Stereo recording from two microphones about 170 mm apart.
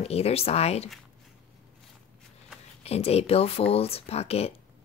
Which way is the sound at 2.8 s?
35° left (ahead or behind).